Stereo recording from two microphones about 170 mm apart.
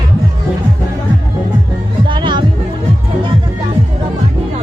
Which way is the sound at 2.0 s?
30° right (ahead or behind).